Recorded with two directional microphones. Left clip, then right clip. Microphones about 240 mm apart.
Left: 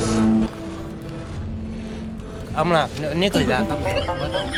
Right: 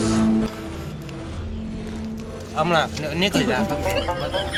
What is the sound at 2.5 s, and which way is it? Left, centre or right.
Speech, left.